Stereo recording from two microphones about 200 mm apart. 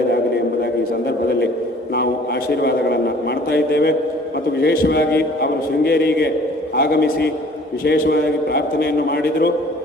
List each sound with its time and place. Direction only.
2.5 s a man's voice: 55° left (ahead or behind)